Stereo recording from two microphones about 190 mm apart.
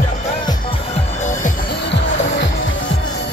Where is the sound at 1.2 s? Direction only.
40° left (ahead or behind).